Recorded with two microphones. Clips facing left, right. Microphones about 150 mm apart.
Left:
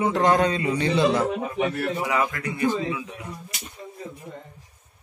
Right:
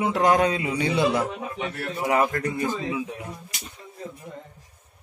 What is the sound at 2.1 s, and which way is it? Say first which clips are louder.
Speech: right 6 dB; 50° right (ahead or behind).